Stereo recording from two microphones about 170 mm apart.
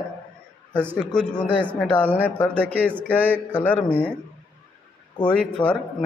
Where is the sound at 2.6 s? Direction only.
10° right (ahead or behind).